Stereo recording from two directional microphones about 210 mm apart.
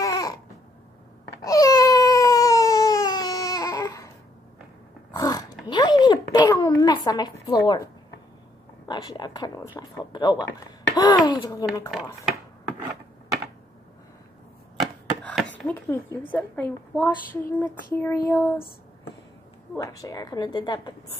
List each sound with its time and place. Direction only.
0.0 s a sound: 15° left (ahead or behind)
1.4 s a sound: 15° left (ahead or behind)
5.1 s oink: 15° left (ahead or behind)
5.7 s a sound: 20° left (ahead or behind)
7.4 s a woman's voice: 20° left (ahead or behind)
9.8 s child singing: 20° left (ahead or behind)
11.2 s a woman's voice: 20° left (ahead or behind)
15.5 s speech: 10° left (ahead or behind)
16.3 s child singing: 10° left (ahead or behind)
19.8 s a woman's voice: 15° left (ahead or behind)